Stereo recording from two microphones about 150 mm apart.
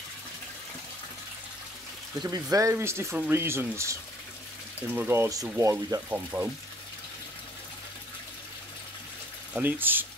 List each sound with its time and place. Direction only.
2.2 s speech: 20° right (ahead or behind)
9.5 s speech: 10° right (ahead or behind)